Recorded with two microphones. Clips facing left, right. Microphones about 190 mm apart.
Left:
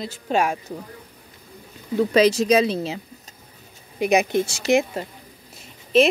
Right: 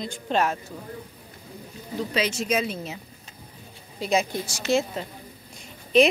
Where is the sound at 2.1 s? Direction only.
40° left (ahead or behind).